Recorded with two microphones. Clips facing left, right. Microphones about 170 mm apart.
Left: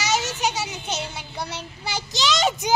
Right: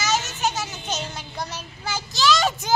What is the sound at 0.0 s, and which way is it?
Children playing, 15° left (ahead or behind).